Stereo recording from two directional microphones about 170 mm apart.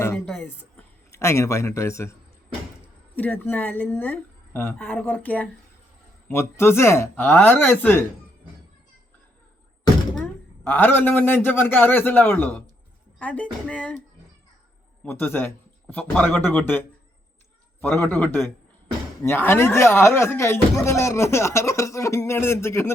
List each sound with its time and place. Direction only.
0.3 s speech: 5° left (ahead or behind)
1.1 s speech: 15° left (ahead or behind)
3.2 s speech: 10° left (ahead or behind)
10.6 s speech: 10° left (ahead or behind)
15.0 s speech: 10° left (ahead or behind)